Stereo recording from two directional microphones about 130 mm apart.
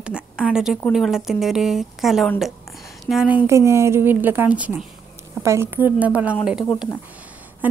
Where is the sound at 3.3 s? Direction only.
15° right (ahead or behind).